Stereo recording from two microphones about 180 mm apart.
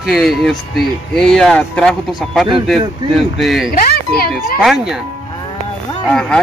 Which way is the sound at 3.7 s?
55° left (ahead or behind).